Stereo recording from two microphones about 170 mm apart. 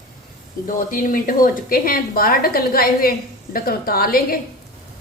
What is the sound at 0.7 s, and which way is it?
A woman's voice, 55° left (ahead or behind).